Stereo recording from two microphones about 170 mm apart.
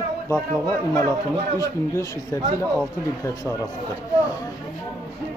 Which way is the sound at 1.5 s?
20° left (ahead or behind).